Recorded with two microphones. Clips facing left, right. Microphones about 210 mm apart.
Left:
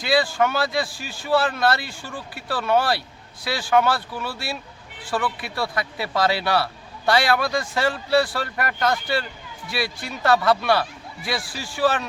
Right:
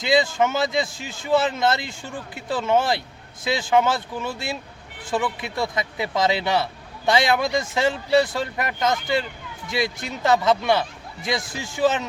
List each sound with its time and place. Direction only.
0.0 s speech: 20° right (ahead or behind)